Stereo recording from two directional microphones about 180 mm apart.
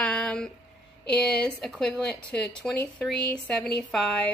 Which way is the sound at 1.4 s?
5° left (ahead or behind).